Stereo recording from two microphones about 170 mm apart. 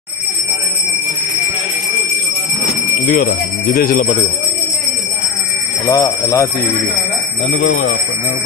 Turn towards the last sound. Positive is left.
turn(degrees=45)  # may be behind; listen again after turning